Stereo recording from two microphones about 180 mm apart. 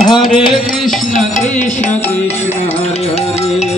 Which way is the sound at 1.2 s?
40° left (ahead or behind).